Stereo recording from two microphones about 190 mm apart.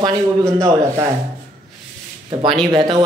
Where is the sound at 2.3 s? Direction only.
25° right (ahead or behind).